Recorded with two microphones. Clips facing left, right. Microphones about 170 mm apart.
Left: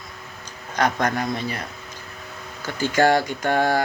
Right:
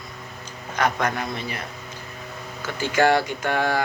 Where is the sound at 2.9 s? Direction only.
35° left (ahead or behind).